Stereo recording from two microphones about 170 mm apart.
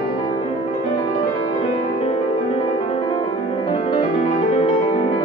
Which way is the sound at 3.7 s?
35° left (ahead or behind).